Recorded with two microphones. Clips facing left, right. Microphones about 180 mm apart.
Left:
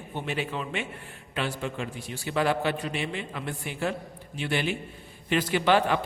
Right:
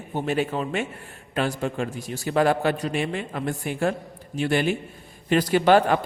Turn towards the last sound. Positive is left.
turn(degrees=-45)  # may be behind; listen again after turning